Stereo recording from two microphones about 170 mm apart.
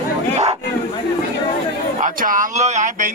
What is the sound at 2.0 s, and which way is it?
Speech, 50° right (ahead or behind).